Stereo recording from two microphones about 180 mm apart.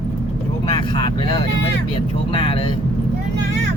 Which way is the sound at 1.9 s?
30° left (ahead or behind).